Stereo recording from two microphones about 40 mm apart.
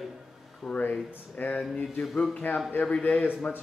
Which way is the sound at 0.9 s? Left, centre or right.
Left.